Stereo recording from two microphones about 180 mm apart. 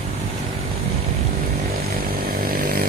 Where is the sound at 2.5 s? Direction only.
55° right (ahead or behind).